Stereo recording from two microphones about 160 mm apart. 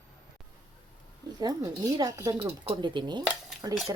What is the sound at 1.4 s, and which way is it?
Speech, 25° right (ahead or behind).